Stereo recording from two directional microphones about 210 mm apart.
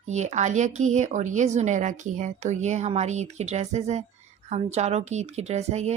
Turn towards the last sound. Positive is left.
turn(degrees=-30)  # may be behind; listen again after turning